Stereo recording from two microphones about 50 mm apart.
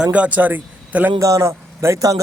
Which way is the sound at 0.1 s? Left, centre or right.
Right.